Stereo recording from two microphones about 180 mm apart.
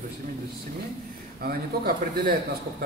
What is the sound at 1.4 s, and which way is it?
Speech, 55° right (ahead or behind).